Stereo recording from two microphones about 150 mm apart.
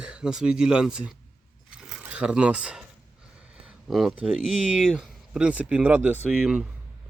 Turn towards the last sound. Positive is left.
turn(degrees=-5)  # may be behind; listen again after turning